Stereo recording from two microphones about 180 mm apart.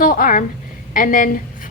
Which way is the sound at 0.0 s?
50° left (ahead or behind).